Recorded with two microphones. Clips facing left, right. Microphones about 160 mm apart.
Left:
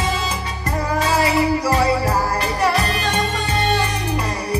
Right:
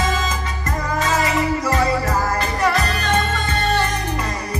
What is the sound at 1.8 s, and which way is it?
Music, 30° left (ahead or behind).